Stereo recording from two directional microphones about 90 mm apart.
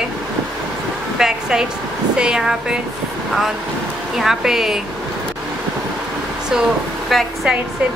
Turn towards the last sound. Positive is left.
turn(degrees=0)  # may be behind; listen again after turning